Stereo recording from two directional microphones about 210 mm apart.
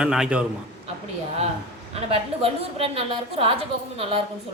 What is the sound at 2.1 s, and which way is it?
A woman's voice, 25° right (ahead or behind).